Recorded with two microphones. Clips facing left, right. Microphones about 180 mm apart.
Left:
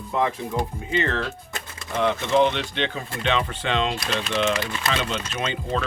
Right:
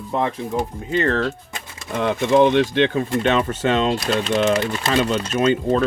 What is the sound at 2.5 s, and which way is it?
Speech, 50° right (ahead or behind).